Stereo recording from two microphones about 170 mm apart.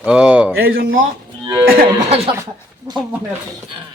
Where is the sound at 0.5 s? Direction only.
60° right (ahead or behind).